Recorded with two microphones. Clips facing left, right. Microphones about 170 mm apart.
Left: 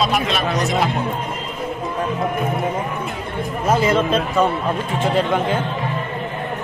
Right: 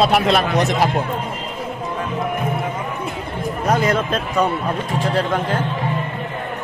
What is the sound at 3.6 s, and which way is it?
Speech, 5° left (ahead or behind).